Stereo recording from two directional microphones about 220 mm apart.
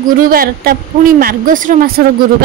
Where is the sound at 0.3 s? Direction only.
40° right (ahead or behind).